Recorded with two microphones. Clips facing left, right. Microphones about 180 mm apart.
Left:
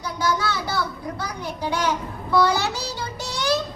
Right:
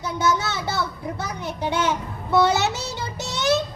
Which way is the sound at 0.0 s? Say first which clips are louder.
Right 1 dB; 25° right (ahead or behind).